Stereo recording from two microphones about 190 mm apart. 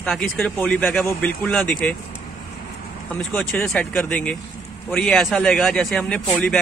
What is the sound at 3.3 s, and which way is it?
A man's voice, 5° left (ahead or behind).